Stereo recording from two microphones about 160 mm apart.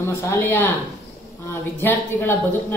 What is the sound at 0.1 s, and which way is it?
Speech, 15° left (ahead or behind).